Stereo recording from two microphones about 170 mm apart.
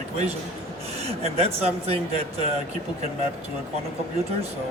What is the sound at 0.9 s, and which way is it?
Speech, 35° right (ahead or behind).